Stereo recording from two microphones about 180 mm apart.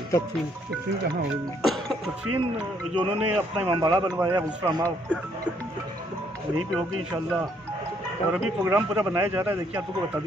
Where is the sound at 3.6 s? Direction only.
20° right (ahead or behind).